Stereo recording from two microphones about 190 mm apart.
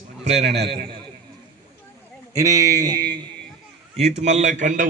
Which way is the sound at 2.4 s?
15° right (ahead or behind).